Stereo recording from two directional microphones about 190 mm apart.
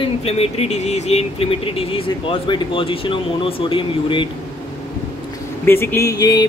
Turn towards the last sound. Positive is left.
turn(degrees=20)  # may be behind; listen again after turning